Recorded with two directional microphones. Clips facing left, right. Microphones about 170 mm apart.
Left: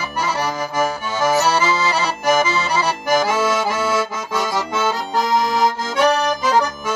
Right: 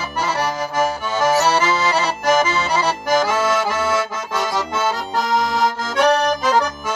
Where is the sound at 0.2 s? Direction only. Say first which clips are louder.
Right 1 dB; centre (ahead or behind).